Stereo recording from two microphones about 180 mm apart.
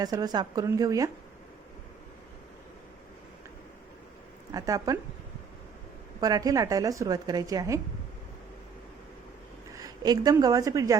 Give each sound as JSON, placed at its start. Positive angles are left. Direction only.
{"t": 0.0, "sound": "a woman's voice", "side_deg": -20}
{"t": 4.5, "sound": "a woman's voice", "side_deg": -20}
{"t": 6.1, "sound": "a woman's voice", "side_deg": -20}
{"t": 9.7, "sound": "a woman's voice", "side_deg": -20}